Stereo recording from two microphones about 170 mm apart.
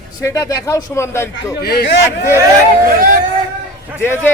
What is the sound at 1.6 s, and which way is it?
Speech, 70° left (ahead or behind).